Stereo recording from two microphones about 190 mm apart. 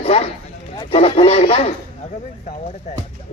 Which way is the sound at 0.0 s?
30° left (ahead or behind).